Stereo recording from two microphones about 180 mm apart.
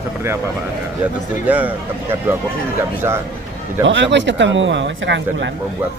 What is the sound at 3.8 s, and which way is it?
Speech, 85° right.